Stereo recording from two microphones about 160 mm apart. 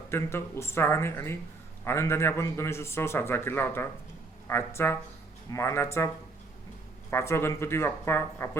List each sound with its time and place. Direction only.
0.1 s a man's voice: 15° left (ahead or behind)
7.1 s a man's voice: 15° left (ahead or behind)